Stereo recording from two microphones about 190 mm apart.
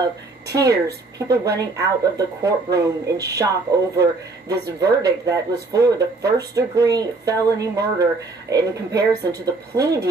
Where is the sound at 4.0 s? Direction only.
60° right (ahead or behind).